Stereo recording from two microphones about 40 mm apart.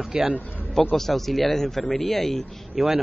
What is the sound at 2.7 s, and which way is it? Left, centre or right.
Speech, centre.